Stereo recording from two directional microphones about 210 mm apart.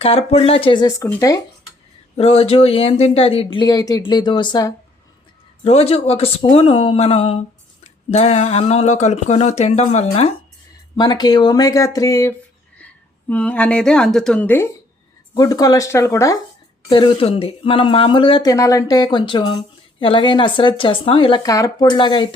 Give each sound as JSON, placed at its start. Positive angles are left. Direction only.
{"t": 0.0, "sound": "speech", "side_deg": 25}
{"t": 2.1, "sound": "speech", "side_deg": 30}
{"t": 10.9, "sound": "speech", "side_deg": 20}
{"t": 16.9, "sound": "speech", "side_deg": 25}